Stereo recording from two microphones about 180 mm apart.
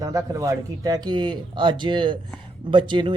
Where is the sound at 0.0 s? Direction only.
20° right (ahead or behind).